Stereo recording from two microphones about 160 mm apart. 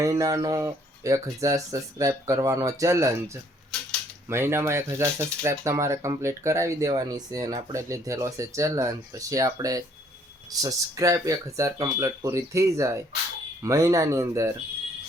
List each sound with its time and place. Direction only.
0.0 s speech: 20° right (ahead or behind)